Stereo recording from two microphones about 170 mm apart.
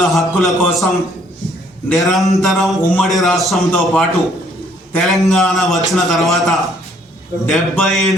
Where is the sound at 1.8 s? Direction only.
Centre (ahead or behind).